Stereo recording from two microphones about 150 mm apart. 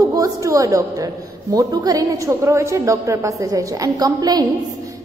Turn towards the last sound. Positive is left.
turn(degrees=-25)  # may be behind; listen again after turning